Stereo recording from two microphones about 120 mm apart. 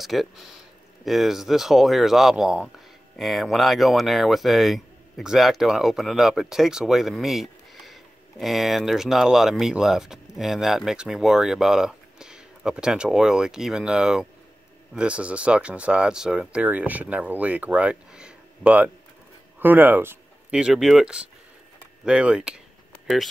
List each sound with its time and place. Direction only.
0.0 s speech: centre (ahead or behind); by 20.2 s 15° right (ahead or behind)
20.5 s speech: 5° right (ahead or behind)